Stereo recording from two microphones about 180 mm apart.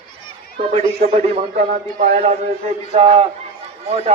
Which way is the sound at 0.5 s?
35° right (ahead or behind).